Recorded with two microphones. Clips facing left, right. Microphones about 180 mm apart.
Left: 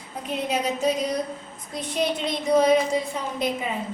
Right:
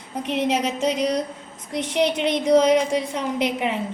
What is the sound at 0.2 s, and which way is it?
A woman's voice, 75° right (ahead or behind).